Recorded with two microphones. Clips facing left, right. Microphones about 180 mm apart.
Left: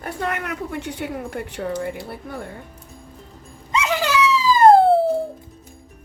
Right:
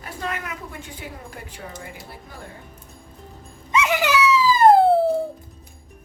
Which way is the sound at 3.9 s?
10° right (ahead or behind).